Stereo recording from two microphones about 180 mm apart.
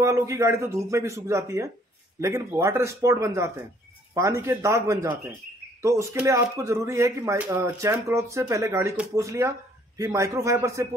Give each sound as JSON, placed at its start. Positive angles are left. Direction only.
{"t": 0.0, "sound": "speech", "side_deg": -15}